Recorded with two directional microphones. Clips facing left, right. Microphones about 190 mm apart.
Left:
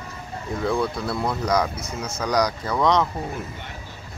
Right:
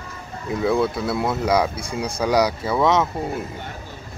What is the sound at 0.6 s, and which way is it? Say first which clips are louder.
Speech: right 4 dB; 5° right (ahead or behind).